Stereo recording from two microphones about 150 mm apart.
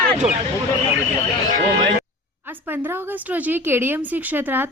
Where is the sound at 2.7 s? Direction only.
15° right (ahead or behind).